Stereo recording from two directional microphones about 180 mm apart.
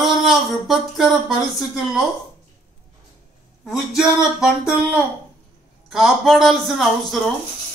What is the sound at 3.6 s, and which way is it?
Speech, centre (ahead or behind).